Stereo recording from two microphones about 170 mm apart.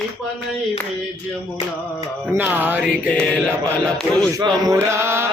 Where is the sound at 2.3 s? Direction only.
10° right (ahead or behind).